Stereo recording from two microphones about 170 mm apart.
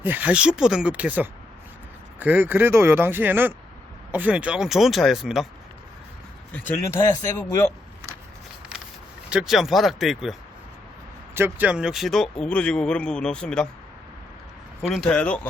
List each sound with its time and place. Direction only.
0.0 s speech: 10° right (ahead or behind)
6.5 s speech: 15° left (ahead or behind)
9.3 s speech: centre (ahead or behind)
11.3 s speech: 10° right (ahead or behind); by 13.7 s 5° left (ahead or behind)
14.8 s speech: centre (ahead or behind)